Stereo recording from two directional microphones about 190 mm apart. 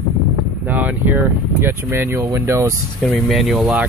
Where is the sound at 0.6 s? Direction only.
10° right (ahead or behind).